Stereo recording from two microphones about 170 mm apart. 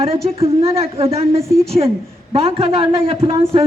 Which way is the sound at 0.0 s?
35° right (ahead or behind).